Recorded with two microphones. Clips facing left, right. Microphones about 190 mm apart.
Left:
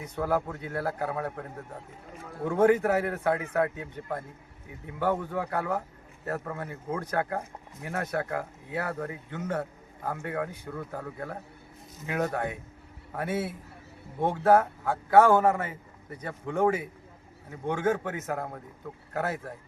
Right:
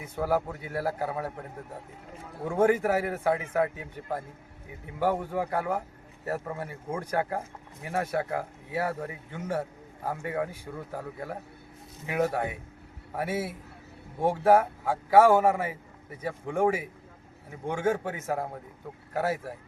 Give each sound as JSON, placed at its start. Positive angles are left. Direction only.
{"t": 0.0, "sound": "speech", "side_deg": -5}
{"t": 2.4, "sound": "speech", "side_deg": -10}
{"t": 4.9, "sound": "speech", "side_deg": -10}